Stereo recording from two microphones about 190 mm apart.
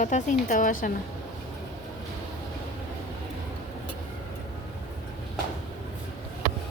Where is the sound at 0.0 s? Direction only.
40° left (ahead or behind).